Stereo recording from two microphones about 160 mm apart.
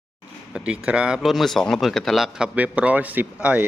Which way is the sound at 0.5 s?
5° right (ahead or behind).